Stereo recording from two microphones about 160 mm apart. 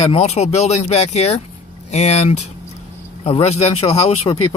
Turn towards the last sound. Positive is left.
turn(degrees=40)  # may be behind; listen again after turning